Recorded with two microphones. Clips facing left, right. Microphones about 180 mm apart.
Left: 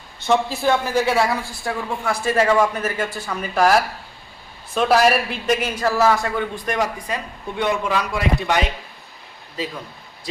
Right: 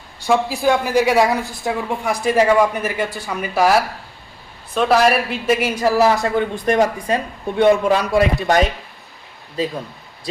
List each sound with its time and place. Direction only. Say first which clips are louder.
0.3 s a woman's voice: right 2 dB; 10° right (ahead or behind); by 7.2 s 30° right (ahead or behind)
7.6 s a man's voice: right 8 dB; 45° right (ahead or behind)